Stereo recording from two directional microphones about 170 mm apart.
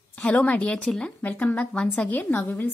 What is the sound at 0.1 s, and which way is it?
A woman's voice, 10° left (ahead or behind).